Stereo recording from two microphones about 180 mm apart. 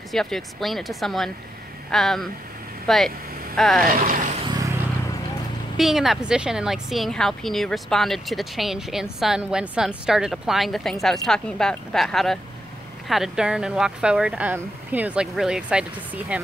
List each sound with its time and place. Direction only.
0.1 s speech: centre (ahead or behind)
3.8 s speech: 50° right (ahead or behind)
4.4 s vehicle: 20° right (ahead or behind)
5.8 s speech: centre (ahead or behind)